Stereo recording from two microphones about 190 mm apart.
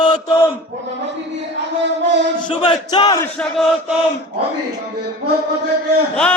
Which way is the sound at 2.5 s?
25° left (ahead or behind).